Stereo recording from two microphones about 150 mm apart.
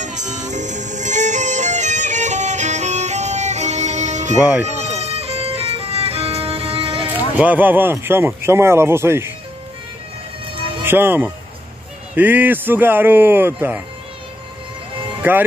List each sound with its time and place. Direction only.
0.0 s music: 50° right (ahead or behind)
4.4 s speech: 10° right (ahead or behind)
4.6 s music: 45° right (ahead or behind)
7.1 s speech: 10° right (ahead or behind)
10.8 s speech: 15° right (ahead or behind)
15.2 s speech: 15° right (ahead or behind)